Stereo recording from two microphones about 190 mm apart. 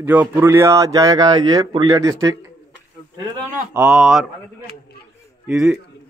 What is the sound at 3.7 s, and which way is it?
Speech, 5° right (ahead or behind).